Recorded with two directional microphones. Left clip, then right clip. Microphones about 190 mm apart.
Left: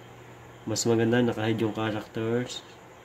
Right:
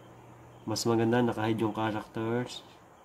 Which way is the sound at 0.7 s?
5° right (ahead or behind).